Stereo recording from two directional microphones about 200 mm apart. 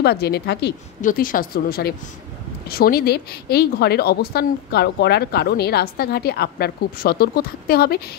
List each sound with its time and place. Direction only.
0.0 s speech: 55° left (ahead or behind)
1.0 s speech: 45° left (ahead or behind)